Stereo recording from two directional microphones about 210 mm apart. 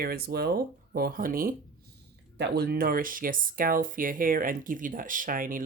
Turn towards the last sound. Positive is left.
turn(degrees=-40)  # may be behind; listen again after turning